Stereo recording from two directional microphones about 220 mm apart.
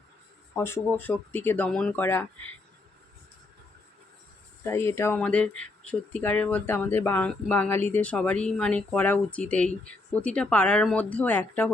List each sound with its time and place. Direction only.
0.5 s speech: 10° left (ahead or behind)
4.6 s speech: 10° left (ahead or behind)